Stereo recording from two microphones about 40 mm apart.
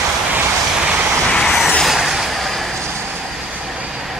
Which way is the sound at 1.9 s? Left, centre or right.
Centre.